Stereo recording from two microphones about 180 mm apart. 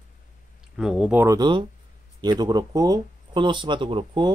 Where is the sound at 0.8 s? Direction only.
5° right (ahead or behind).